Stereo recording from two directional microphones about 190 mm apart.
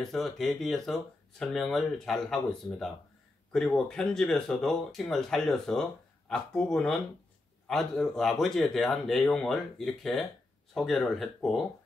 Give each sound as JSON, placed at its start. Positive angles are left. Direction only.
{"t": 0.0, "sound": "speech", "side_deg": 0}